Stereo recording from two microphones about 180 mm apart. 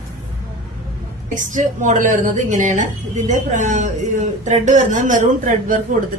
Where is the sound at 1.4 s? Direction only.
45° right (ahead or behind).